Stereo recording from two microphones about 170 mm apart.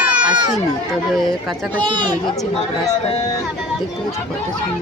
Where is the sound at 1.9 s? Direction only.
25° right (ahead or behind).